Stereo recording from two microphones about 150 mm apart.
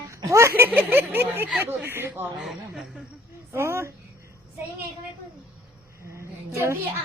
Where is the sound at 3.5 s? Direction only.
15° right (ahead or behind).